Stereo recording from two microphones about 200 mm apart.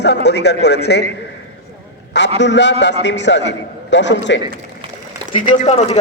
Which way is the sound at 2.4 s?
60° left (ahead or behind).